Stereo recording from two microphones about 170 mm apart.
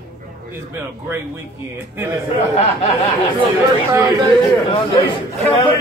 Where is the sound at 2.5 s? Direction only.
40° left (ahead or behind).